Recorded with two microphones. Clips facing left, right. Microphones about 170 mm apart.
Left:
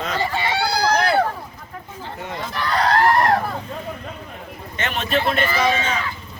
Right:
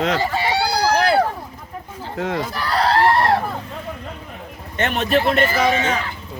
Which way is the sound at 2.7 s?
30° right (ahead or behind).